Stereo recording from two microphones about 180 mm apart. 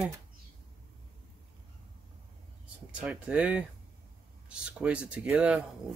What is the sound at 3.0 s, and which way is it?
Speech, 5° right (ahead or behind).